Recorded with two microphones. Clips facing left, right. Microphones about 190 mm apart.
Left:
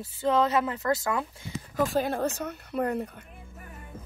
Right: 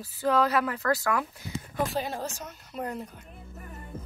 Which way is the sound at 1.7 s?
45° left (ahead or behind).